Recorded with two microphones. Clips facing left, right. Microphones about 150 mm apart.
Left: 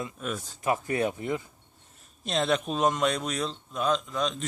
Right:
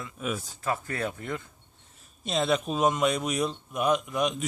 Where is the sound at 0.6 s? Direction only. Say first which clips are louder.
Left 5 dB; 15° left (ahead or behind).